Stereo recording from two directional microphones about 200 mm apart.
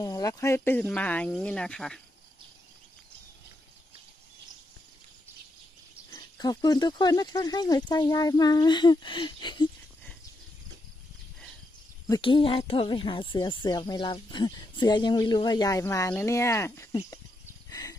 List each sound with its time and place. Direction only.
0.0 s speech: 20° left (ahead or behind)
6.0 s a woman's voice: 20° left (ahead or behind)
12.1 s a woman's voice: 25° left (ahead or behind)
17.6 s a sound: 15° left (ahead or behind)